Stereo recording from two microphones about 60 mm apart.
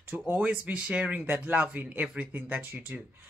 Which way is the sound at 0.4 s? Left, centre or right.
Right.